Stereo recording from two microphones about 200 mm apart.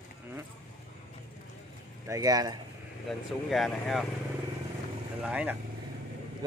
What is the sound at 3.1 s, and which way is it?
Speech, centre (ahead or behind).